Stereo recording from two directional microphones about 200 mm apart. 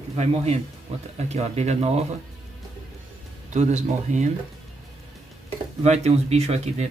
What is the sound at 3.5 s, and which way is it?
Speech, 35° right (ahead or behind).